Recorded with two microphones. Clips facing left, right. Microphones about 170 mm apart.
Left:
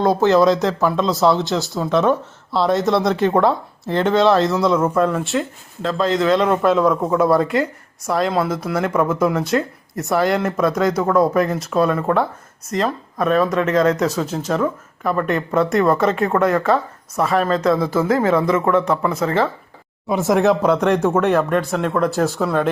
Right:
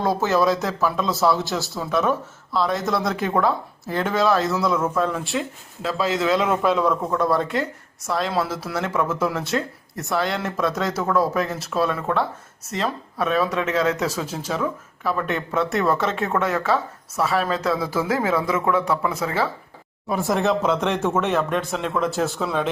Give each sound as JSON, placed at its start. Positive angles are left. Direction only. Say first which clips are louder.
{"t": 0.0, "sound": "speech", "louder": "left 6 dB", "side_deg": 15}
{"t": 4.9, "sound": "speech", "louder": "left 5 dB", "side_deg": 0}